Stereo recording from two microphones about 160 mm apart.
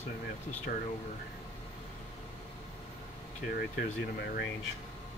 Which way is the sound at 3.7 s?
85° left.